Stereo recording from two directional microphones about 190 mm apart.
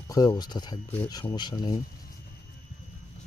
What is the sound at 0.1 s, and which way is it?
Speech, 20° left (ahead or behind).